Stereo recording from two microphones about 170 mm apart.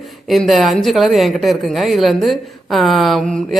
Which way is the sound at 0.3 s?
Centre (ahead or behind).